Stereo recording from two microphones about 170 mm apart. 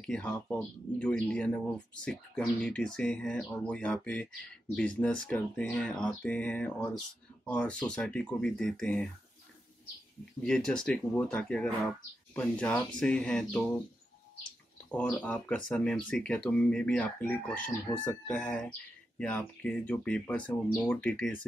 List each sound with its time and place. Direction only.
0.0 s speech: 5° left (ahead or behind)
10.4 s speech: 5° left (ahead or behind)
14.9 s speech: 10° left (ahead or behind)